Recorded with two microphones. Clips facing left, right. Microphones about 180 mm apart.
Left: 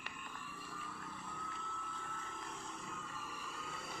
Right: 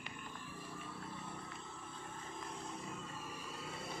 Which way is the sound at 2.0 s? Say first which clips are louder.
Right 1 dB; 30° right (ahead or behind).